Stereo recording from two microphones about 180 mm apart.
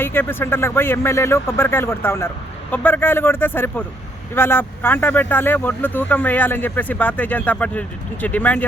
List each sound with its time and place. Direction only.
0.0 s speech: 10° left (ahead or behind)